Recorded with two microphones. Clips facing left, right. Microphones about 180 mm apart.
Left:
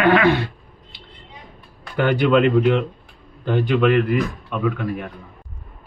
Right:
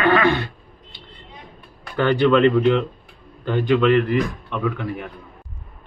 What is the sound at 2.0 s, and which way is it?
Speech, 10° left (ahead or behind).